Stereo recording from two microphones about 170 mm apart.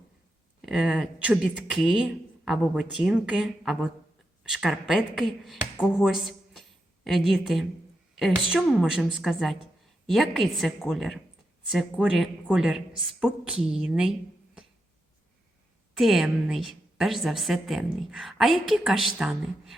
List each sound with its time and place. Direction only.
0.6 s a woman's voice: 5° right (ahead or behind)
16.0 s a woman's voice: centre (ahead or behind)